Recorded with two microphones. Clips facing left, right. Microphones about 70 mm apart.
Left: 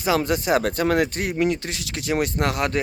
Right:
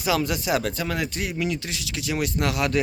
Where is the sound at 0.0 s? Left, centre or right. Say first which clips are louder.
Left 3 dB; left.